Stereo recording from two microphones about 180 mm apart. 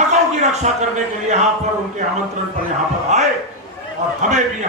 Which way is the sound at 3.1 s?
40° right (ahead or behind).